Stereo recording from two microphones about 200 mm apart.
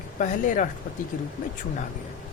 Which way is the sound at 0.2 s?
40° left (ahead or behind).